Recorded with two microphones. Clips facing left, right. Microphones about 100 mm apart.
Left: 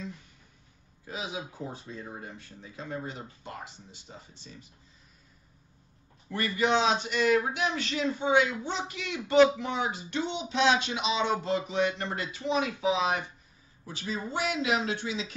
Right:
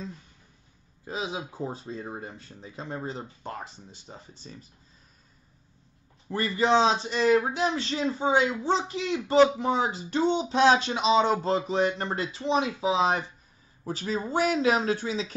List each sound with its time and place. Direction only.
1.0 s a man's voice: 30° right (ahead or behind)
6.2 s a man's voice: 30° right (ahead or behind)